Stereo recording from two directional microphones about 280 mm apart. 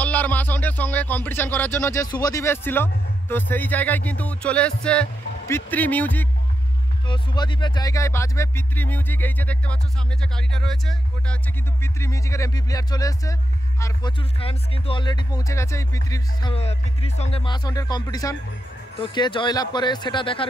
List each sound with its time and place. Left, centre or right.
0.0 s speech: centre
7.1 s speech: centre